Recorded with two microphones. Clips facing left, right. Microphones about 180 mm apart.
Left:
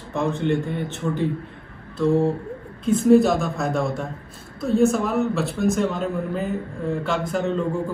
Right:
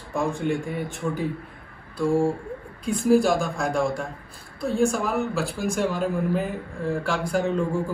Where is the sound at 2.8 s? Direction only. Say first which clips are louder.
Left 4 dB; centre (ahead or behind).